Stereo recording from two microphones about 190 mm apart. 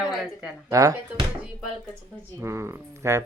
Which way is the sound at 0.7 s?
20° right (ahead or behind).